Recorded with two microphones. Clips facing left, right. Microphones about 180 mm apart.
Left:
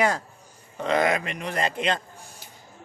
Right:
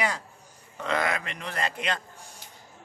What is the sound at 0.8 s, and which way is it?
Speech, 20° left (ahead or behind).